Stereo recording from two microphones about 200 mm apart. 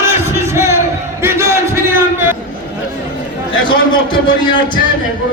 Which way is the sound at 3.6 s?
25° left (ahead or behind).